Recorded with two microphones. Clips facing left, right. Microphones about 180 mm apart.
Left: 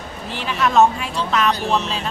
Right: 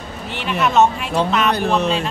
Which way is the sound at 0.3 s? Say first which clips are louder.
Right 1 dB; centre (ahead or behind).